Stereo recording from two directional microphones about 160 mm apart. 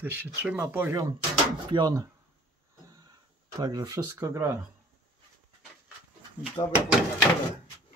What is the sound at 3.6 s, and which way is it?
Speech, 25° right (ahead or behind).